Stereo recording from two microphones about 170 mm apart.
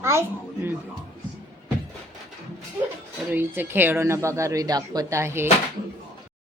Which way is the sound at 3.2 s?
10° right (ahead or behind).